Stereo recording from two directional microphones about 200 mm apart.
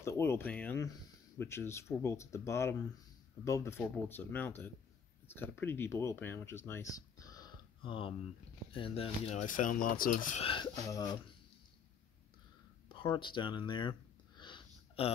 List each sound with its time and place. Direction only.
0.0 s speech: 15° left (ahead or behind); by 10.4 s 40° left (ahead or behind)
10.4 s speech: 25° left (ahead or behind)
12.8 s a sound: 25° left (ahead or behind)